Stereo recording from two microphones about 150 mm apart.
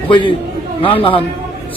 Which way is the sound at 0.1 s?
35° left (ahead or behind).